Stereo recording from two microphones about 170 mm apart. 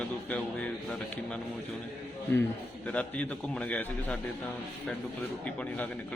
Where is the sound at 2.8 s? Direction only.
10° left (ahead or behind).